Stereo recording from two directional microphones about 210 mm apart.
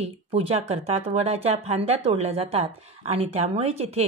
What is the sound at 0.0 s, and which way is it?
Speech, 30° right (ahead or behind).